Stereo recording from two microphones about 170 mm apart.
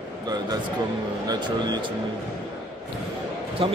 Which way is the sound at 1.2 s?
25° right (ahead or behind).